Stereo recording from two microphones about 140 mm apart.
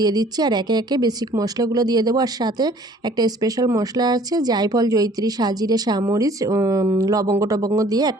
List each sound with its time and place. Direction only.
0.0 s speech: 30° right (ahead or behind)